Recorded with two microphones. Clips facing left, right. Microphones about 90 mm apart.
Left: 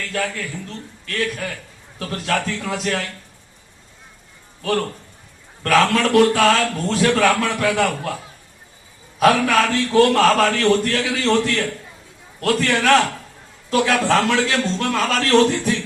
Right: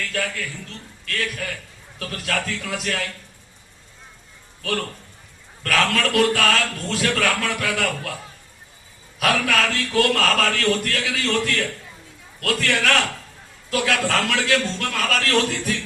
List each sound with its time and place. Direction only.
0.1 s a man's voice: 25° left (ahead or behind)
5.6 s a man's voice: 30° left (ahead or behind)
9.1 s a man's voice: 30° left (ahead or behind)